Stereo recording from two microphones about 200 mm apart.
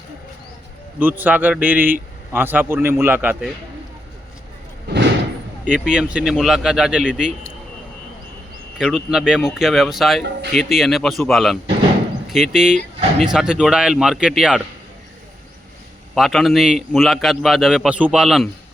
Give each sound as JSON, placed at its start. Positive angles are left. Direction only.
{"t": 0.9, "sound": "a man's voice", "side_deg": -10}
{"t": 5.6, "sound": "a man's voice", "side_deg": -5}
{"t": 8.8, "sound": "a man's voice", "side_deg": -5}
{"t": 12.7, "sound": "speech", "side_deg": -30}
{"t": 13.2, "sound": "a man's voice", "side_deg": -5}
{"t": 16.1, "sound": "a man's voice", "side_deg": 0}